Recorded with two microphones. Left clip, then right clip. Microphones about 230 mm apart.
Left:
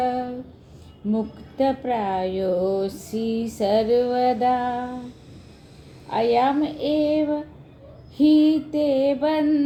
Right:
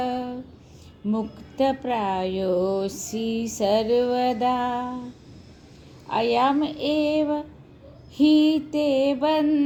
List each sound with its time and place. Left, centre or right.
0.0 s a sound: right
1.1 s speech: right
6.1 s speech: right